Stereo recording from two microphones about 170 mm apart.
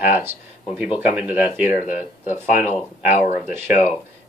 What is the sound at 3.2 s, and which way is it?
Speech, 45° left (ahead or behind).